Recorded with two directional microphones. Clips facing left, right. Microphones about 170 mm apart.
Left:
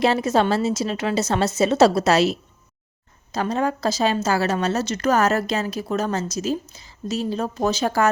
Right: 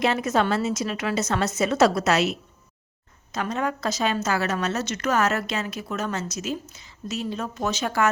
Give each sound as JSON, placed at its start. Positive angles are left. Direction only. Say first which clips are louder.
{"t": 0.0, "sound": "a woman's voice", "louder": "left 4 dB", "side_deg": 30}